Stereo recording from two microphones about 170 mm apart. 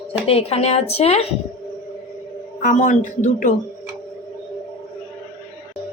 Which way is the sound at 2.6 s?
50° left (ahead or behind).